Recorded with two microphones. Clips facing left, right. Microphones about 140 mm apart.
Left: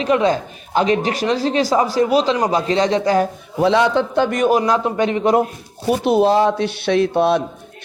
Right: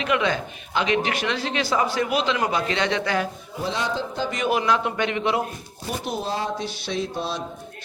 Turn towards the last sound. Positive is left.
turn(degrees=60)  # may be behind; listen again after turning